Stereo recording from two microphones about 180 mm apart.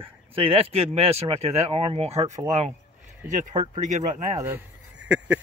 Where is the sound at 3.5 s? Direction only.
30° right (ahead or behind).